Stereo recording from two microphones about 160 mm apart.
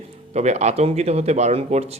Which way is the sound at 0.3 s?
45° right (ahead or behind).